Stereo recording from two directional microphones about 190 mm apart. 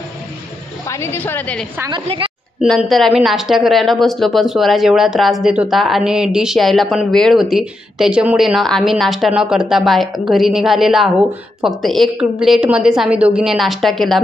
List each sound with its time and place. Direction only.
0.8 s a woman's voice: 15° left (ahead or behind)
1.8 s a woman's voice: 25° right (ahead or behind)
2.6 s speech: centre (ahead or behind)